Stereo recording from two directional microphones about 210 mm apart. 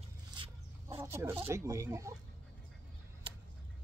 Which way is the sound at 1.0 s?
10° right (ahead or behind).